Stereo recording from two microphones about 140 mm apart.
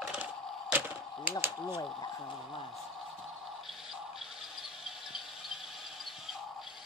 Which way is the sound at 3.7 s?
5° right (ahead or behind).